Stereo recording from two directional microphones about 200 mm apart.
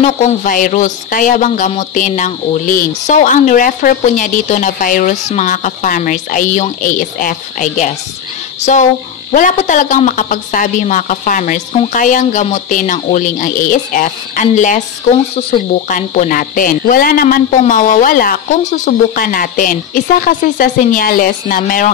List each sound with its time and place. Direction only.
0.0 s speech: 35° left (ahead or behind)
15.9 s speech: 40° left (ahead or behind)